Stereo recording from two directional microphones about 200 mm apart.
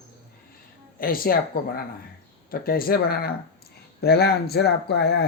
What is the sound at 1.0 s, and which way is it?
A man's voice, 45° left (ahead or behind).